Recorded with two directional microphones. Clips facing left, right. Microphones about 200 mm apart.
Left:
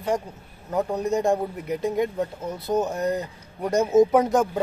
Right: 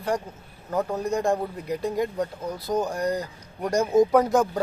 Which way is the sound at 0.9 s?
20° left (ahead or behind).